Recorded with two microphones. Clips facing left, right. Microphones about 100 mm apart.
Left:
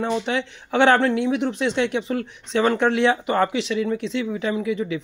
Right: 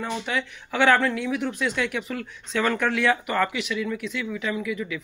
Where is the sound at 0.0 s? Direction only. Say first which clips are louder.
Left 5 dB; 25° left (ahead or behind).